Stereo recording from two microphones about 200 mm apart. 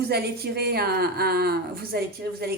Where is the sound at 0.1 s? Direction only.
50° right (ahead or behind).